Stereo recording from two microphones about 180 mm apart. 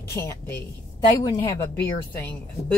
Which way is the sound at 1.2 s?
20° left (ahead or behind).